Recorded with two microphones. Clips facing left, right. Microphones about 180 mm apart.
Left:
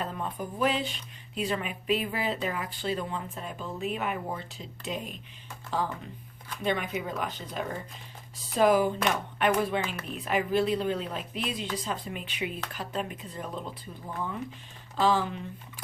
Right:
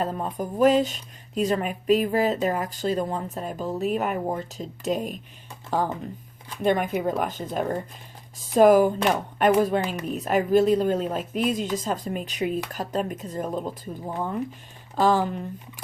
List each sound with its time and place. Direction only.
0.0 s speech: 40° right (ahead or behind)
14.9 s speech: 50° right (ahead or behind)